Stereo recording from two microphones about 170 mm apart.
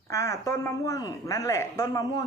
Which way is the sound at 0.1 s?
15° left (ahead or behind).